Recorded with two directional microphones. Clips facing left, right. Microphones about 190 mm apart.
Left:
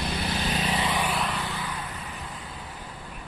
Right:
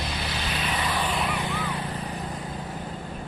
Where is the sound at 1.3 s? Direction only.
15° right (ahead or behind).